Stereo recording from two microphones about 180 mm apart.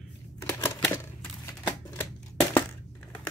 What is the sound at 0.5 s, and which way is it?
Typewriter, 15° left (ahead or behind).